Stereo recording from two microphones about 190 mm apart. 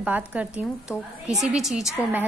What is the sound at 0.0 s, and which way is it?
A woman's voice, 5° right (ahead or behind).